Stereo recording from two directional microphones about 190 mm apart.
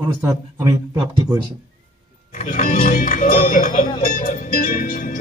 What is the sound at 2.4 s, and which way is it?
Music, 45° left (ahead or behind).